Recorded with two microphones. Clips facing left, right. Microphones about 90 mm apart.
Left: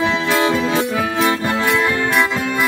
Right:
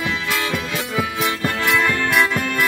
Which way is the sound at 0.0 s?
25° left (ahead or behind).